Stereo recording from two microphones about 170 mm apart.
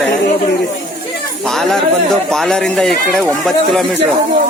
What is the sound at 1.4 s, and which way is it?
Speech, centre (ahead or behind).